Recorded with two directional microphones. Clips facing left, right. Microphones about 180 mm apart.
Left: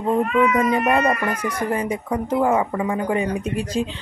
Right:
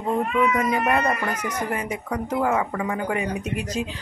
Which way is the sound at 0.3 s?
30° left (ahead or behind).